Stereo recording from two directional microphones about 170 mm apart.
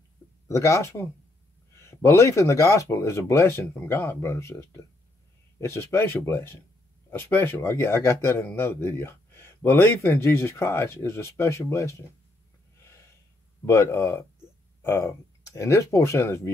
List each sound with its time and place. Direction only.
0.5 s speech: 15° left (ahead or behind)
13.7 s speech: 15° left (ahead or behind)